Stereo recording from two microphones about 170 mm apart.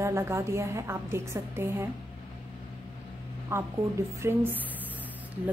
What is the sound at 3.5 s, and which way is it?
A woman's voice, 15° right (ahead or behind).